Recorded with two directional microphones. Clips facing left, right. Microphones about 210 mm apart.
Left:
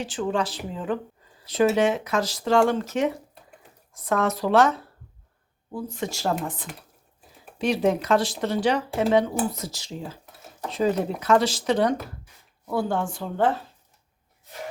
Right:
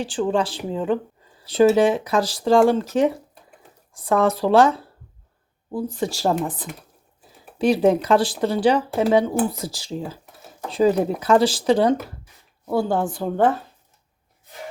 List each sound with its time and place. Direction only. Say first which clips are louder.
0.0 s speech: right 4 dB; 30° right (ahead or behind)